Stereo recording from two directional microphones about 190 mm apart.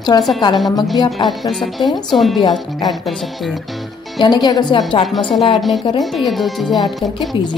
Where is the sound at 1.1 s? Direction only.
Centre (ahead or behind).